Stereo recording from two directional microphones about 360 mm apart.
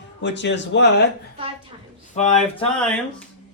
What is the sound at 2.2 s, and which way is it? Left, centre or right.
Speech, centre.